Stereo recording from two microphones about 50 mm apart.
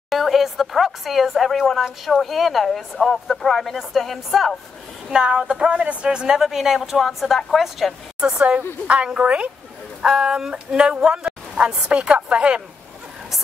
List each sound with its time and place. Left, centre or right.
0.1 s speech: centre
5.1 s speech: centre
8.2 s a woman's voice: right